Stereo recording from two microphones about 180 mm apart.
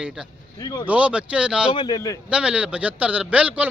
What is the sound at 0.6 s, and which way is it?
Speech, 25° left (ahead or behind).